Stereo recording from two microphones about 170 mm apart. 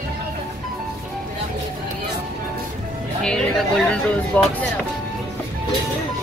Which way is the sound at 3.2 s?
5° left (ahead or behind).